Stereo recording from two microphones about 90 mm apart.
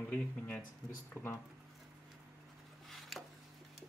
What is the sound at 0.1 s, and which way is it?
Speech, 15° left (ahead or behind).